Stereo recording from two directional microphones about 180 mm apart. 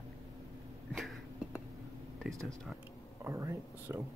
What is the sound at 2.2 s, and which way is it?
Speech, centre (ahead or behind).